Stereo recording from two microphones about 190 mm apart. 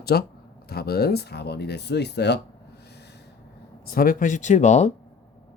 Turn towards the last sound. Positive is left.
turn(degrees=40)  # may be behind; listen again after turning